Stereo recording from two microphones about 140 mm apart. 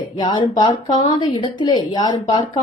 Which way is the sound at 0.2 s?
30° left (ahead or behind).